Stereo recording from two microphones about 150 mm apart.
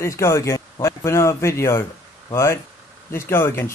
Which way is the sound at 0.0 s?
20° left (ahead or behind).